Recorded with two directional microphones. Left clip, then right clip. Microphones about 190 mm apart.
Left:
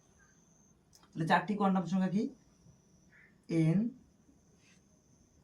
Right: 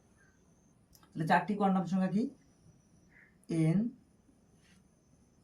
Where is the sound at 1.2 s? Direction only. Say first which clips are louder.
Right 1 dB; 25° right (ahead or behind).